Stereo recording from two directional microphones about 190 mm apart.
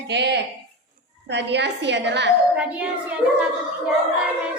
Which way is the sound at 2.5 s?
5° right (ahead or behind).